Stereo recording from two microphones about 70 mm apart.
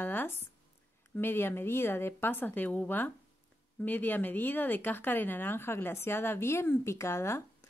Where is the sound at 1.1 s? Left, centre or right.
Left.